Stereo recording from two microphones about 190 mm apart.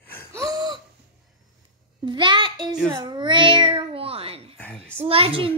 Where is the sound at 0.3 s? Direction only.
20° right (ahead or behind).